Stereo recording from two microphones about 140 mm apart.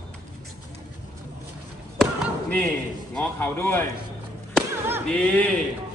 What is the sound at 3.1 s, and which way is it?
Speech, 10° left (ahead or behind).